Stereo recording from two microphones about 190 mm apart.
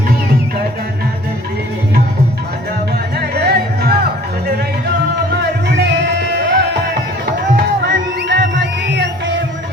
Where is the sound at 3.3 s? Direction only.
60° right (ahead or behind).